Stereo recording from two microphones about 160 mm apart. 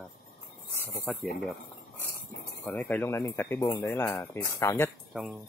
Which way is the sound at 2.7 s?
10° left (ahead or behind).